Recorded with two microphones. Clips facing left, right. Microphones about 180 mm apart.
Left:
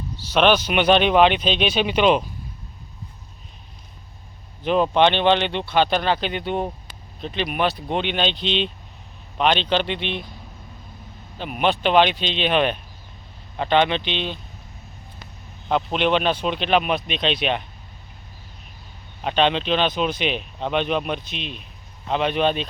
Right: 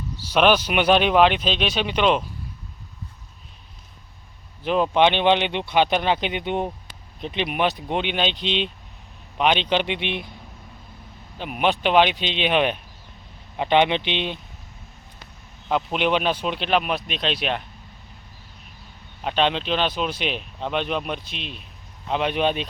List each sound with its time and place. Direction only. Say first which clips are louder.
0.2 s speech: even; 10° right (ahead or behind)
4.6 s speech: left 1 dB; 5° right (ahead or behind)
11.3 s speech: left 1 dB; 5° right (ahead or behind)
15.7 s speech: left 2 dB; 5° right (ahead or behind)
19.2 s speech: left 2 dB; 5° right (ahead or behind)